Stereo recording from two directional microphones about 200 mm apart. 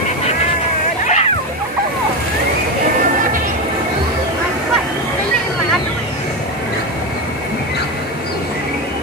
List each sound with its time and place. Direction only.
1.0 s splash: 35° left (ahead or behind)